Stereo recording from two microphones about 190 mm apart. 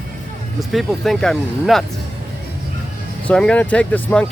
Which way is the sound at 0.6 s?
Centre (ahead or behind).